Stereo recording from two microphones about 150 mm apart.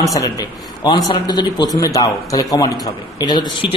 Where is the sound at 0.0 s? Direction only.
20° left (ahead or behind).